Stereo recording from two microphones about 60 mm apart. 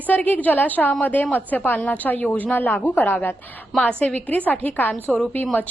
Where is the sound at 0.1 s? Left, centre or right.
Left.